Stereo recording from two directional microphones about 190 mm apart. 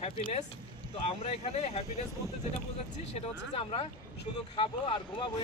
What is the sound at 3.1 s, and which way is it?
Speech, 30° left (ahead or behind).